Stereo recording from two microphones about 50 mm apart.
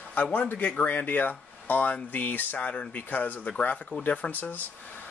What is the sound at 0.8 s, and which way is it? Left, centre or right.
Speech, left.